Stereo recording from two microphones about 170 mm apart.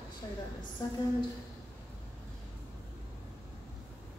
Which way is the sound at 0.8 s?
20° left (ahead or behind).